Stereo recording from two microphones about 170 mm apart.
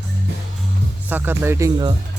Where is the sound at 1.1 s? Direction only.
10° right (ahead or behind).